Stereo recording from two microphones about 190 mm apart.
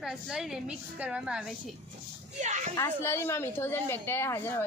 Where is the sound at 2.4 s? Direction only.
40° right (ahead or behind).